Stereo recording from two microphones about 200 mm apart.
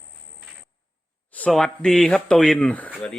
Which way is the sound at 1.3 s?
5° left (ahead or behind).